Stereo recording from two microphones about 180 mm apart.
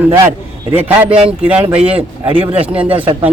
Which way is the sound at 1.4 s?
5° right (ahead or behind).